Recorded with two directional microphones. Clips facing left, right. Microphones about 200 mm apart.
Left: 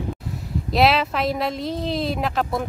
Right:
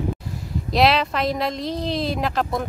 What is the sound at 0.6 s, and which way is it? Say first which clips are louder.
Speech: even; centre (ahead or behind).